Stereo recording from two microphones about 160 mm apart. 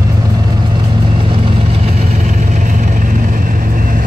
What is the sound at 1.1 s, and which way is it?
Vehicle, 35° right (ahead or behind).